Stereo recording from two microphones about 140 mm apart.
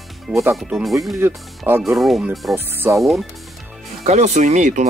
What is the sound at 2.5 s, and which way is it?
Speech, 15° right (ahead or behind).